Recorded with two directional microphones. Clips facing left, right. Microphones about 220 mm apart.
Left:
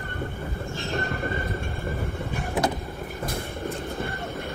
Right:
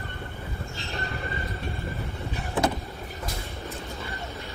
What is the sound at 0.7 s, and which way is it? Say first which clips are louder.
Train: left 7 dB; 50° left (ahead or behind).